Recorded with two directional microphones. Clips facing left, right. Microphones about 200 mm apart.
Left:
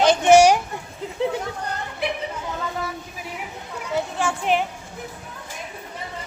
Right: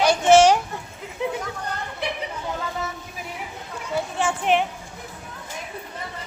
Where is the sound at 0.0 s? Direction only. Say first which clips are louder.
Left 1 dB; 20° left (ahead or behind).